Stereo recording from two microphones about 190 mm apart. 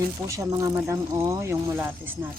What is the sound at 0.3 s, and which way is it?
Speech, 15° right (ahead or behind).